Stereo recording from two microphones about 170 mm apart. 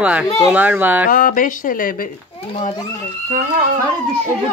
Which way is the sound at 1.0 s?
55° left (ahead or behind).